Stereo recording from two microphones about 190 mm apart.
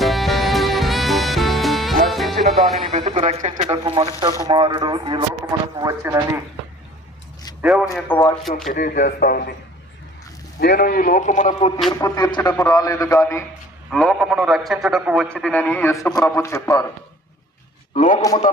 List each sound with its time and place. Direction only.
0.0 s music: centre (ahead or behind)
2.8 s speech: 35° right (ahead or behind); by 6.1 s 15° right (ahead or behind)
7.6 s a man's voice: 5° right (ahead or behind)
7.9 s a man's voice: 10° left (ahead or behind)
8.7 s a man's voice: 50° left (ahead or behind)
10.6 s a man's voice: 55° left (ahead or behind)
11.9 s a man's voice: 20° left (ahead or behind)
13.9 s a man's voice: centre (ahead or behind)
17.9 s a man's voice: 40° left (ahead or behind)